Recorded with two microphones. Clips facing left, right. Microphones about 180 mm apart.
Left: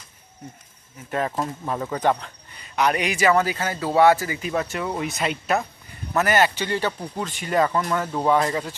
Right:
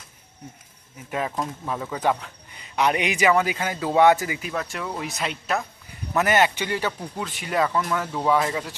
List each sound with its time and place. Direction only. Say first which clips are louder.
1.1 s speech: left 2 dB; 5° right (ahead or behind)
2.7 s speech: even; 20° right (ahead or behind)
4.4 s speech: left 4 dB; centre (ahead or behind)
6.1 s speech: even; 20° right (ahead or behind); by 8.7 s 5° right (ahead or behind)